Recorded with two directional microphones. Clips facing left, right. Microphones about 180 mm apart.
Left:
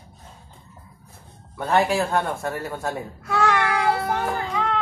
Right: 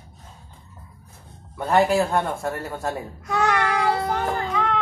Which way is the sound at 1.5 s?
Centre (ahead or behind).